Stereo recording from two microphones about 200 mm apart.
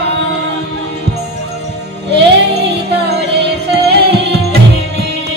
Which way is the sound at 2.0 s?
55° right (ahead or behind).